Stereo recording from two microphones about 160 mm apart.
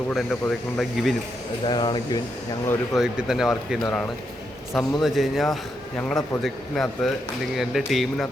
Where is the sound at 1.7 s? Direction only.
30° left (ahead or behind).